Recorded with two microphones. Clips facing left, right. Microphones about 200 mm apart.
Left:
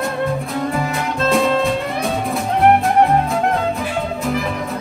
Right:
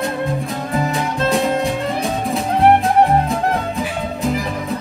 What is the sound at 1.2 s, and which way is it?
Music, 15° right (ahead or behind).